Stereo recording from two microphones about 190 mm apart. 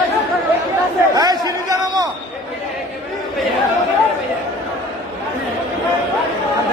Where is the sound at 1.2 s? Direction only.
20° right (ahead or behind).